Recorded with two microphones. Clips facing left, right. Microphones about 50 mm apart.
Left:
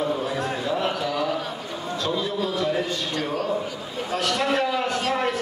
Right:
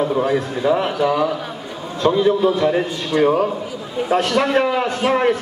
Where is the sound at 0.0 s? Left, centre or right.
Right.